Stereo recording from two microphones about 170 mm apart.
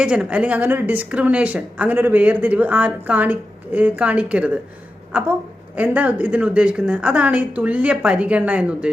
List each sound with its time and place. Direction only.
0.0 s speech: 5° right (ahead or behind)